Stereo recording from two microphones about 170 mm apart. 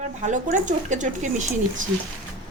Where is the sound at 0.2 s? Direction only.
45° right (ahead or behind).